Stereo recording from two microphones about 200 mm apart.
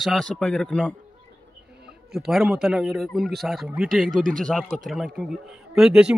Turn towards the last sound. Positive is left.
turn(degrees=-5)  # may be behind; listen again after turning